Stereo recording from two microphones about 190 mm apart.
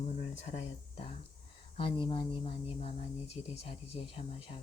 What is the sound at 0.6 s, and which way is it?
Speech, 35° left (ahead or behind).